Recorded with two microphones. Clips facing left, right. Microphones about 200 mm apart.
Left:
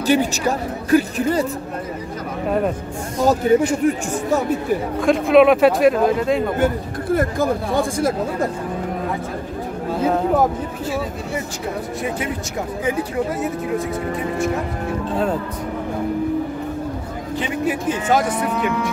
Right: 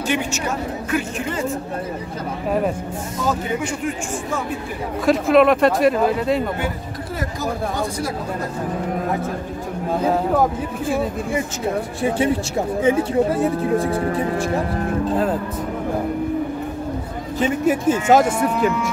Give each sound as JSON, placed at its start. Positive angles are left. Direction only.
{"t": 0.0, "sound": "a woman's voice", "side_deg": 35}
{"t": 3.3, "sound": "a woman's voice", "side_deg": 40}
{"t": 5.0, "sound": "speech", "side_deg": 0}
{"t": 6.6, "sound": "speech", "side_deg": 55}
{"t": 12.8, "sound": "speech", "side_deg": -30}
{"t": 17.4, "sound": "speech", "side_deg": -45}
{"t": 18.0, "sound": "speech", "side_deg": -25}